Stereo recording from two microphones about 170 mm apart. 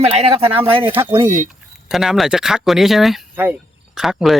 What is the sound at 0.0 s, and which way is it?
Speech, 35° right (ahead or behind).